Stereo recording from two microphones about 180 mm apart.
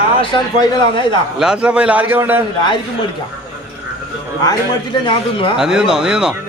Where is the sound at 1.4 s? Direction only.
5° right (ahead or behind).